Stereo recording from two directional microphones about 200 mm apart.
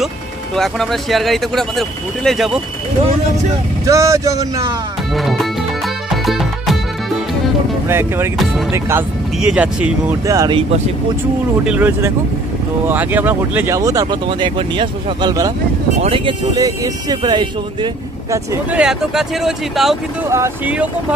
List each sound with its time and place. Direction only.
0.6 s speech: centre (ahead or behind)
3.8 s speech: 15° right (ahead or behind)
5.1 s speech: centre (ahead or behind)
6.0 s music: centre (ahead or behind)
7.9 s speech: 10° right (ahead or behind)
11.6 s speech: 10° right (ahead or behind)
18.8 s speech: 5° right (ahead or behind)
20.2 s speech: 15° right (ahead or behind)